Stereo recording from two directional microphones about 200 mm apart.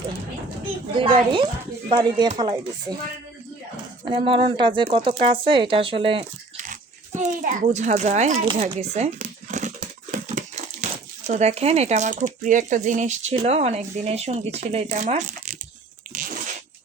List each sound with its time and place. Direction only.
0.9 s speech: 25° right (ahead or behind)
4.0 s speech: 25° right (ahead or behind)
6.6 s oink: 40° right (ahead or behind)
11.3 s speech: 35° right (ahead or behind)
16.1 s a sound: 40° right (ahead or behind)